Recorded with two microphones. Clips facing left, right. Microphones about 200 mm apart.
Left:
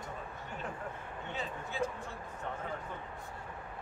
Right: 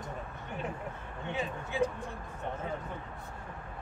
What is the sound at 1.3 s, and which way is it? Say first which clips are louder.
Speech: right 5 dB; 15° right (ahead or behind).